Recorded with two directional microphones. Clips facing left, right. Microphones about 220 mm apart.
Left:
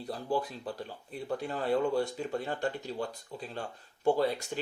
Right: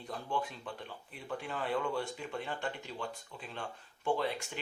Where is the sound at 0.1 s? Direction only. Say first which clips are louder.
Left 5 dB; 35° left (ahead or behind).